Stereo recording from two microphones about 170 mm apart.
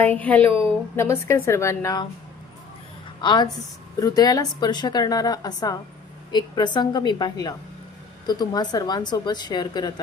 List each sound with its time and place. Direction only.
0.0 s a woman's voice: 10° left (ahead or behind)
3.2 s a woman's voice: 25° left (ahead or behind)